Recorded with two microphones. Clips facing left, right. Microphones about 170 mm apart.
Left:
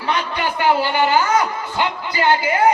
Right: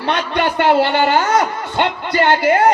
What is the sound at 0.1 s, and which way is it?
A man's voice, 65° right (ahead or behind).